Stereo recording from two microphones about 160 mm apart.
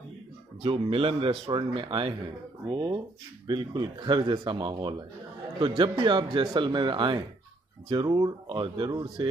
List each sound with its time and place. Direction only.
0.6 s speech: 35° right (ahead or behind)